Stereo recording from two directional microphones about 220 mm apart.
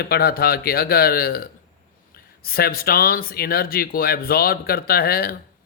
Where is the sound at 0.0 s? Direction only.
45° left (ahead or behind).